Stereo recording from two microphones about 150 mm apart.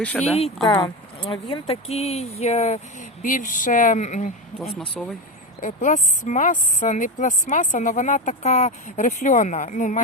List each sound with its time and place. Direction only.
0.0 s speech: 10° left (ahead or behind)
0.6 s speech: 30° left (ahead or behind); by 3.2 s 45° left (ahead or behind)
3.2 s speech: 60° left (ahead or behind)
5.0 s speech: centre (ahead or behind)
5.6 s speech: 55° left (ahead or behind)